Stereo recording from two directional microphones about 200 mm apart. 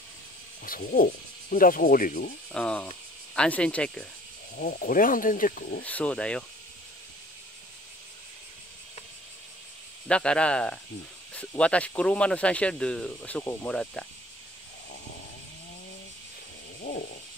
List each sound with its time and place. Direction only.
0.7 s snake: 40° left (ahead or behind)
2.5 s speech: 5° left (ahead or behind)
4.6 s snake: 45° left (ahead or behind)
5.9 s speech: 5° left (ahead or behind)
10.0 s speech: 5° left (ahead or behind)
16.9 s a sound: 55° left (ahead or behind)